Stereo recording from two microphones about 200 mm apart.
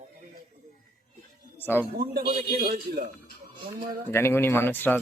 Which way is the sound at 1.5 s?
10° left (ahead or behind).